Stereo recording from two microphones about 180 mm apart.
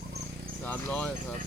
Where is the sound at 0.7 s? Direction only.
10° left (ahead or behind).